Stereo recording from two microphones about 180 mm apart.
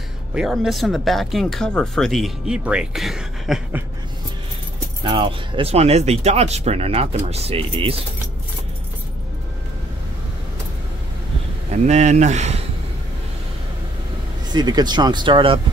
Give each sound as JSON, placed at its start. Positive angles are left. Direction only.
{"t": 0.3, "sound": "speech", "side_deg": 0}
{"t": 5.0, "sound": "speech", "side_deg": -30}
{"t": 11.7, "sound": "speech", "side_deg": -40}
{"t": 14.5, "sound": "speech", "side_deg": -25}